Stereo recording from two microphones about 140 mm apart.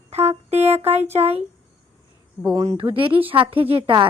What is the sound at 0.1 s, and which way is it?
Speech, 50° right (ahead or behind).